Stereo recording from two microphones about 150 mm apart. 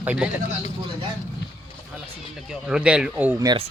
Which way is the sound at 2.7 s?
5° right (ahead or behind).